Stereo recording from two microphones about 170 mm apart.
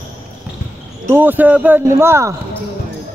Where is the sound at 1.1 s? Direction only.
10° right (ahead or behind).